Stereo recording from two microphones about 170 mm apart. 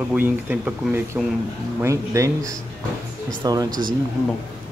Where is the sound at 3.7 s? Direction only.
55° right (ahead or behind).